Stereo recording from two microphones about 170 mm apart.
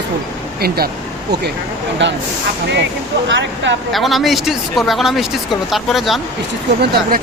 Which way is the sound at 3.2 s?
90° right.